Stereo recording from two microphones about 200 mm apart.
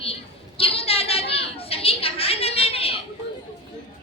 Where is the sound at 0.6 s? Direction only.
30° left (ahead or behind).